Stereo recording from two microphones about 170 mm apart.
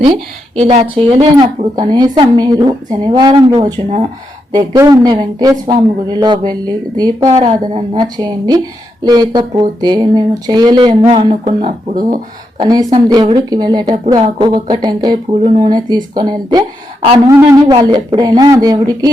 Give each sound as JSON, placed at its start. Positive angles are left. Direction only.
{"t": 0.6, "sound": "speech", "side_deg": -40}
{"t": 11.6, "sound": "speech", "side_deg": -55}
{"t": 12.5, "sound": "speech", "side_deg": -20}
{"t": 15.3, "sound": "speech", "side_deg": -35}